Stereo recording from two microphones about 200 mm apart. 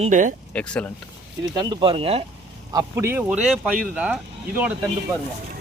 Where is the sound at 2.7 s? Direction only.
15° right (ahead or behind).